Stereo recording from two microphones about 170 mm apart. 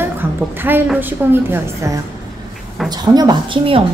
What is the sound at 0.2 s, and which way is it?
A woman's voice, 10° right (ahead or behind).